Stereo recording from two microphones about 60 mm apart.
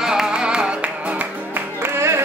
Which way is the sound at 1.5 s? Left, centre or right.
Right.